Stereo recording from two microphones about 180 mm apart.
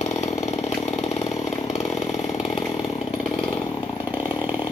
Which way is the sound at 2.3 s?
35° left (ahead or behind).